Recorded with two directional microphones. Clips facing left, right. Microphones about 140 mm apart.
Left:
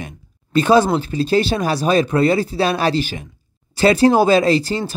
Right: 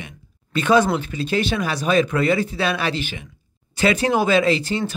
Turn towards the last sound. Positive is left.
turn(degrees=35)  # may be behind; listen again after turning